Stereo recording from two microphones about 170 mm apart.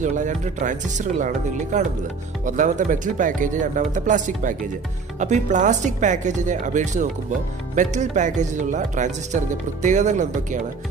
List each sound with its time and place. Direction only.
0.0 s speech: 45° right (ahead or behind)